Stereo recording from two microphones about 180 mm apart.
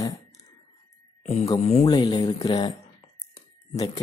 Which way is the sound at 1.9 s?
20° left (ahead or behind).